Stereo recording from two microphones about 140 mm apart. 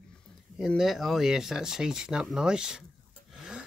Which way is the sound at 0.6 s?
Centre (ahead or behind).